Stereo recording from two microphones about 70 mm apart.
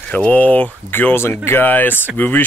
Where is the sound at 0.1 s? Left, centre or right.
Left.